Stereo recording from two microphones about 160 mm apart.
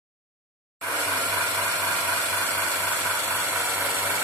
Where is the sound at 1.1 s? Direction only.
15° right (ahead or behind).